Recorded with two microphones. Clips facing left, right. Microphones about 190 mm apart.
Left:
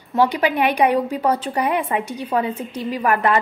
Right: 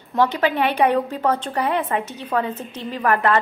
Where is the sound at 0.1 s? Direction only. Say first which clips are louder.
Left 1 dB; 10° left (ahead or behind).